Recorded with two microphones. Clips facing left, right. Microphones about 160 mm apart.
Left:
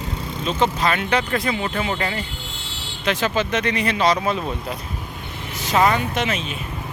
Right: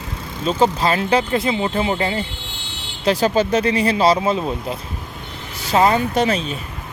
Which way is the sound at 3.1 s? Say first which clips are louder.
Right 5 dB; 35° right (ahead or behind).